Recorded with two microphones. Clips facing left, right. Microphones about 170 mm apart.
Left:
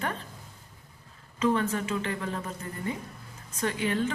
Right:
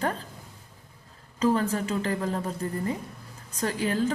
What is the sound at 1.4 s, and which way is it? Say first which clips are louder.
A woman's voice: right 2 dB; 35° right (ahead or behind).